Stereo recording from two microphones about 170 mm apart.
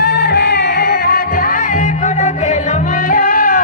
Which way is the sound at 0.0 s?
70° left (ahead or behind).